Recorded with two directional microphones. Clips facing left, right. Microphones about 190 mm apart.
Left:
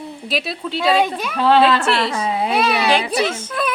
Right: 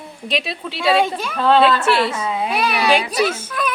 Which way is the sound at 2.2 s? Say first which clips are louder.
Left 2 dB; 30° left (ahead or behind).